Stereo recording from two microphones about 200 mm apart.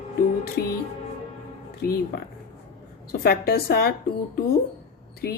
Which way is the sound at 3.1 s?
50° left (ahead or behind).